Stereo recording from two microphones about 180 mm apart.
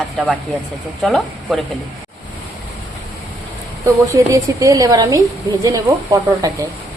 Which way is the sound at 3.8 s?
20° right (ahead or behind).